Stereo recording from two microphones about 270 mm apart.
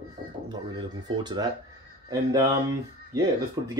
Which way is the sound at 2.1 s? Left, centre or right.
Centre.